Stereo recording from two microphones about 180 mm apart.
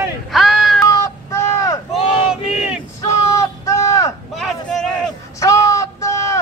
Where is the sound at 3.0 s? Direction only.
15° left (ahead or behind).